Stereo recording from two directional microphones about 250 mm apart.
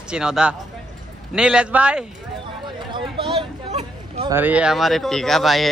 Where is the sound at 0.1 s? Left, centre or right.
Centre.